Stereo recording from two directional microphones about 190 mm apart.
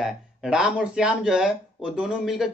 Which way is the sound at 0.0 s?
5° right (ahead or behind).